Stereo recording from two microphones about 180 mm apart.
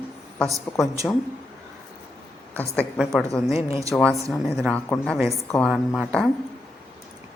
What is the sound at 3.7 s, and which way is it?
Speech, 15° right (ahead or behind).